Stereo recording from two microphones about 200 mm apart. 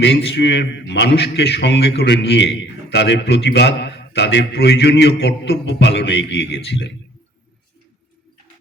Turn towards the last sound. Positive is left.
turn(degrees=60)  # may be behind; listen again after turning